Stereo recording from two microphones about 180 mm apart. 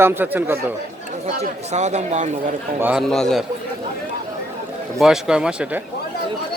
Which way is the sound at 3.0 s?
Centre (ahead or behind).